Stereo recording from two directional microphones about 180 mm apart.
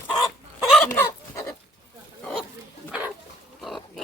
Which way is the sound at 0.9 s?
15° left (ahead or behind).